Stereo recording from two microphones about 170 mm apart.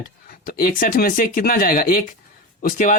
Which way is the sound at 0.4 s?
55° left (ahead or behind).